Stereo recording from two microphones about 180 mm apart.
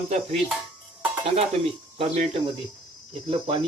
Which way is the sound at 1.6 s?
35° right (ahead or behind).